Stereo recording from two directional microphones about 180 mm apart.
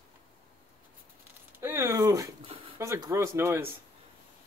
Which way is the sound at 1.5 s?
15° right (ahead or behind).